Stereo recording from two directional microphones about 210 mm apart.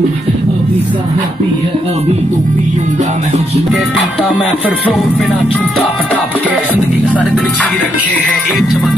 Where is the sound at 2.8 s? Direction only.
35° right (ahead or behind).